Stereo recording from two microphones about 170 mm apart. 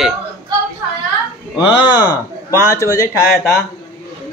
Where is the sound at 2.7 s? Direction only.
20° left (ahead or behind).